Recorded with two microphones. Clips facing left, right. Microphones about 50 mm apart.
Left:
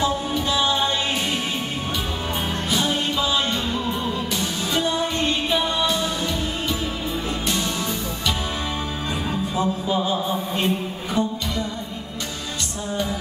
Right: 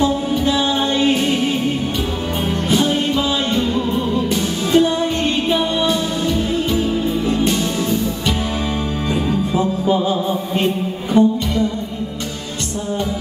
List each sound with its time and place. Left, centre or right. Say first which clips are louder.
0.5 s music: right 2 dB; right
4.3 s music: right 8 dB; right
11.1 s music: right 10 dB; right